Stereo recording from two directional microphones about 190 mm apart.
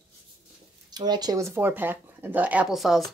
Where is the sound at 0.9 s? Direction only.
20° right (ahead or behind).